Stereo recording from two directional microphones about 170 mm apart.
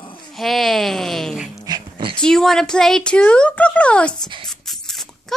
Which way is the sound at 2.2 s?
5° left (ahead or behind).